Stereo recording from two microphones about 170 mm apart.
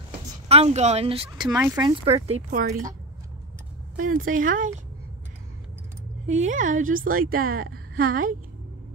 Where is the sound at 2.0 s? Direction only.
35° right (ahead or behind).